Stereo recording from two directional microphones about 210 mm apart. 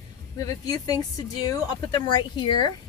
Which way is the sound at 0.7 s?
20° left (ahead or behind).